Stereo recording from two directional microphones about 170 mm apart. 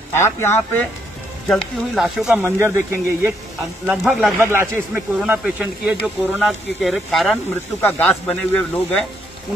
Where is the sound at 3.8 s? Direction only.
Centre (ahead or behind).